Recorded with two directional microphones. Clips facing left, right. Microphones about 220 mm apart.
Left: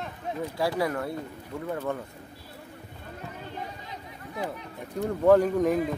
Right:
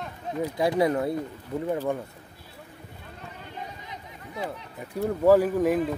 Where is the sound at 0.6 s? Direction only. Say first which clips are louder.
Right 5 dB; 20° right (ahead or behind).